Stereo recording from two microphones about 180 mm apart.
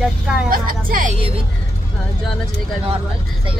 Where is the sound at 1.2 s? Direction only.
30° right (ahead or behind).